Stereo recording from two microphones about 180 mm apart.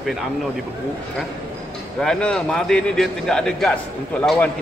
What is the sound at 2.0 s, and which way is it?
A man's voice, 5° left (ahead or behind).